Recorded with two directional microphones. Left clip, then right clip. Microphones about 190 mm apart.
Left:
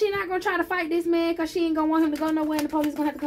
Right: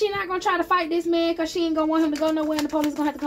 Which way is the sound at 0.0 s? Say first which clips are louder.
Right 1 dB; 30° right (ahead or behind).